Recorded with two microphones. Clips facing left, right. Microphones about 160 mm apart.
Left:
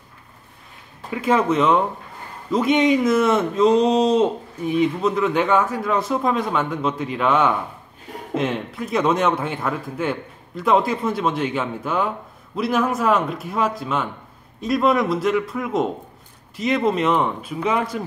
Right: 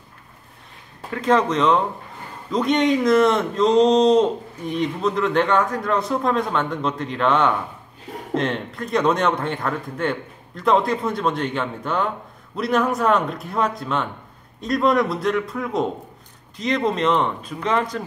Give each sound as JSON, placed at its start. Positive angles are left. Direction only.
{"t": 1.1, "sound": "speech", "side_deg": 5}